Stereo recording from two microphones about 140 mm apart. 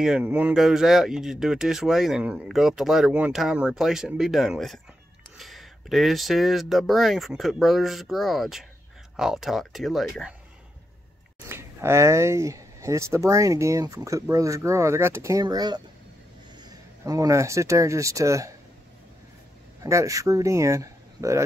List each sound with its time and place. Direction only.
0.0 s speech: 5° right (ahead or behind)
11.4 s speech: 20° right (ahead or behind)
19.8 s speech: 20° right (ahead or behind)